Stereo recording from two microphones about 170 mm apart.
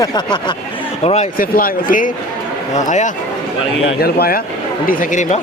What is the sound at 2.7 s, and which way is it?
Speech, 45° left (ahead or behind).